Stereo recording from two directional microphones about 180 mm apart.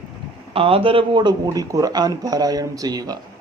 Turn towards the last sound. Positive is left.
turn(degrees=-20)  # may be behind; listen again after turning